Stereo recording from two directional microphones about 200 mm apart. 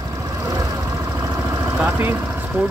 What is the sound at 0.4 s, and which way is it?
Vehicle, 15° right (ahead or behind).